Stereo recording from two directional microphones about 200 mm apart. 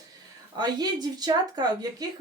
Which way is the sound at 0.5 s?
20° right (ahead or behind).